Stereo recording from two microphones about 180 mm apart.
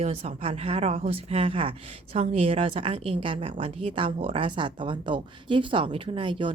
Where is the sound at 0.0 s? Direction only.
35° right (ahead or behind).